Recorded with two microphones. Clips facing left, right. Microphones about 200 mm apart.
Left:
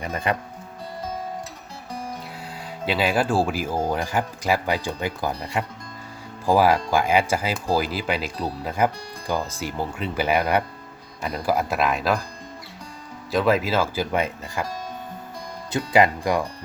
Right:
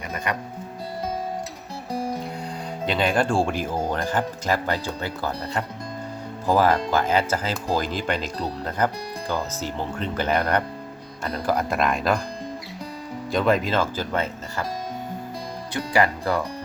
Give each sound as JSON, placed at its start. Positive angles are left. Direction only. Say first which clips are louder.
{"t": 2.8, "sound": "speech", "louder": "even", "side_deg": 5}
{"t": 13.3, "sound": "speech", "louder": "left 1 dB", "side_deg": 5}
{"t": 15.7, "sound": "speech", "louder": "left 3 dB", "side_deg": 20}